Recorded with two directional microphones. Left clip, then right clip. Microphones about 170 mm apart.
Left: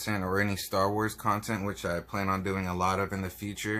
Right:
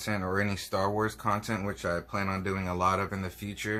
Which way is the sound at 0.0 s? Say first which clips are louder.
Left 1 dB; 40° left (ahead or behind).